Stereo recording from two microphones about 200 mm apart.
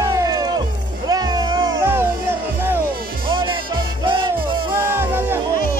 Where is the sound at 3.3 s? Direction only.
25° right (ahead or behind).